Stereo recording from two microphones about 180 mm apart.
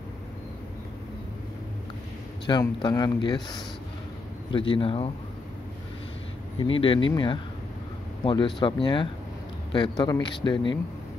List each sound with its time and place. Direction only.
2.4 s speech: 25° left (ahead or behind)
6.6 s a man's voice: 30° left (ahead or behind)